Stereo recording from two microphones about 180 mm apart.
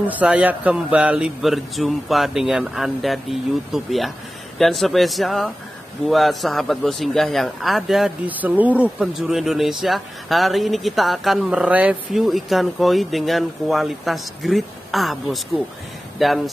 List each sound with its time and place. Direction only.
0.0 s a man's voice: 10° right (ahead or behind)